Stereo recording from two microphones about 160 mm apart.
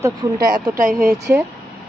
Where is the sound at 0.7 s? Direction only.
55° right (ahead or behind).